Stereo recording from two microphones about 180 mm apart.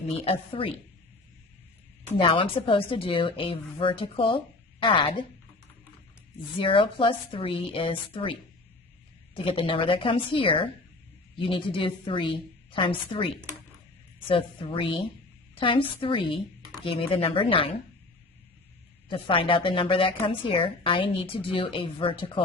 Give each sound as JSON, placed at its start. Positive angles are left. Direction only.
{"t": 0.2, "sound": "a woman's voice", "side_deg": 30}
{"t": 2.1, "sound": "a woman's voice", "side_deg": 30}
{"t": 6.6, "sound": "a woman's voice", "side_deg": 30}
{"t": 19.1, "sound": "a woman's voice", "side_deg": 30}